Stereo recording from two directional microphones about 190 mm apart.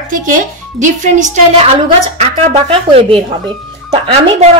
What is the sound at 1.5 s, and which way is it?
A woman's voice, 30° right (ahead or behind).